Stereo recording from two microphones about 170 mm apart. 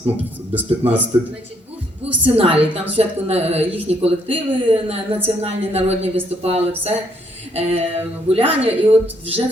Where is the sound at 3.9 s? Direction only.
35° right (ahead or behind).